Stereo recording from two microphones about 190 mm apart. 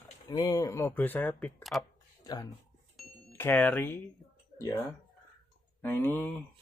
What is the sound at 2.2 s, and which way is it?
Speech, 20° left (ahead or behind).